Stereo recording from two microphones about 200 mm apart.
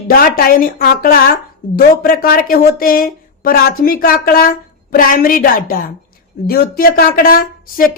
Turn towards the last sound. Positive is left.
turn(degrees=45)  # may be behind; listen again after turning